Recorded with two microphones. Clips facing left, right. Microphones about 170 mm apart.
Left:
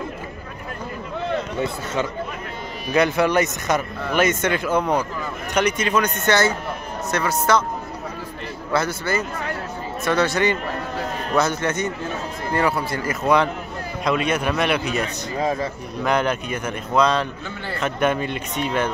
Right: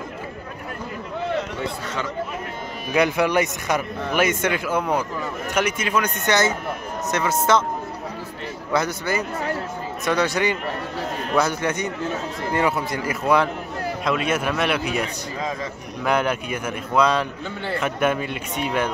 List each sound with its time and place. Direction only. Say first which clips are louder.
2.9 s a man's voice: left 1 dB; 10° right (ahead or behind)
8.7 s a man's voice: left 1 dB; 15° right (ahead or behind)
15.3 s a sound: left 6 dB; 30° left (ahead or behind)
16.0 s speech: left 1 dB; 10° right (ahead or behind)